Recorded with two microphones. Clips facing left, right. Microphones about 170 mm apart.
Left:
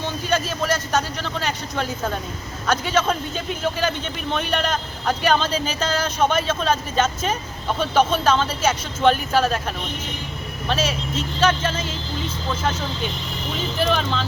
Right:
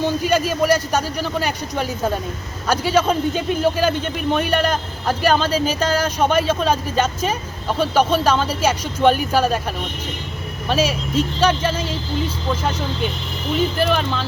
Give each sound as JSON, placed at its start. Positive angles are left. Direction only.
{"t": 0.2, "sound": "speech", "side_deg": -10}
{"t": 10.7, "sound": "speech", "side_deg": -10}
{"t": 13.9, "sound": "speech", "side_deg": -5}